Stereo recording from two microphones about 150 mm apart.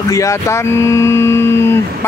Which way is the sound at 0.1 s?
20° left (ahead or behind).